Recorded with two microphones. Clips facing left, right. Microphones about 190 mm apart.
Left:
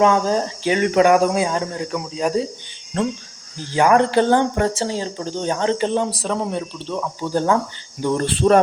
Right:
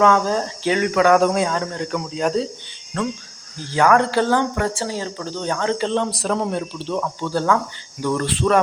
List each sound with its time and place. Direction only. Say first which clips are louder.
0.0 s speech: left 1 dB; 20° left (ahead or behind)
1.1 s speech: even; 5° left (ahead or behind)
2.9 s speech: left 2 dB; 20° left (ahead or behind)
7.3 s speech: left 2 dB; 25° left (ahead or behind)